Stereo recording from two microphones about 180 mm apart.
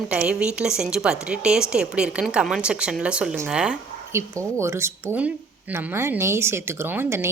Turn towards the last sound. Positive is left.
turn(degrees=-10)  # may be behind; listen again after turning